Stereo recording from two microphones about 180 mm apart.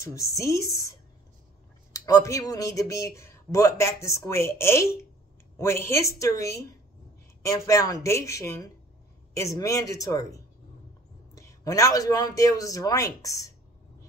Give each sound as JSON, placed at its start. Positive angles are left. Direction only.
{"t": 0.0, "sound": "speech", "side_deg": 15}
{"t": 11.3, "sound": "a man's voice", "side_deg": 15}